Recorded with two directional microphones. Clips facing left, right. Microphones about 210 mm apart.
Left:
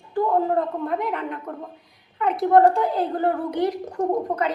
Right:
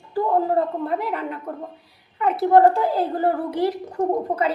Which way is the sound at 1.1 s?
5° right (ahead or behind).